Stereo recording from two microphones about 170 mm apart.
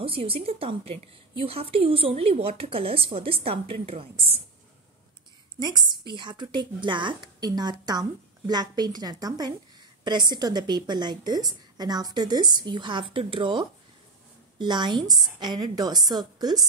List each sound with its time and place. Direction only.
0.0 s a woman's voice: 35° right (ahead or behind)
5.6 s a woman's voice: 25° right (ahead or behind)